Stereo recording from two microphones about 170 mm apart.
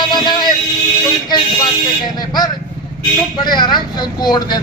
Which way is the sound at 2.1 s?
25° left (ahead or behind).